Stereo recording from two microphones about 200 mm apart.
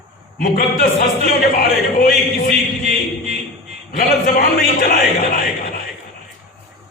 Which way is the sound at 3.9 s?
50° left (ahead or behind).